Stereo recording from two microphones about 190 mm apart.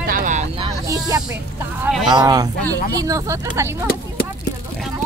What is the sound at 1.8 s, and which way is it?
Speech, centre (ahead or behind).